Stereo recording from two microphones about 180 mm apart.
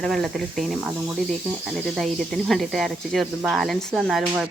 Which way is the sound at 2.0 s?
Centre (ahead or behind).